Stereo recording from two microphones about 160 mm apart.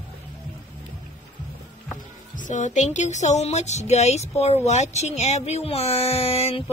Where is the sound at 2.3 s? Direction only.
50° left (ahead or behind).